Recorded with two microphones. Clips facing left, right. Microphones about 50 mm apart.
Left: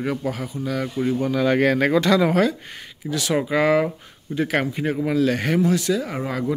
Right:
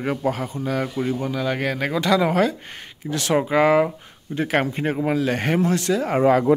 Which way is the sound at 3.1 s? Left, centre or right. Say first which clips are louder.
Right 1 dB; right.